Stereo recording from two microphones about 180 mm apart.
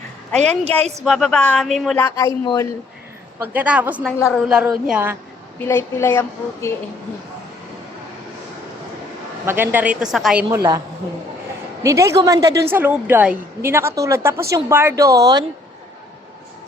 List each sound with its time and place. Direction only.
0.3 s a woman's voice: 5° left (ahead or behind)
2.0 s speech: 15° left (ahead or behind)
3.4 s a woman's voice: 10° right (ahead or behind)
5.5 s a woman's voice: 15° left (ahead or behind)
9.5 s a woman's voice: 10° right (ahead or behind)
10.5 s a woman's voice: 20° right (ahead or behind)
11.8 s a woman's voice: 15° right (ahead or behind)